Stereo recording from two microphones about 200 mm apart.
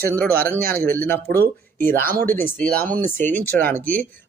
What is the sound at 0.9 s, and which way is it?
Speech, 10° left (ahead or behind).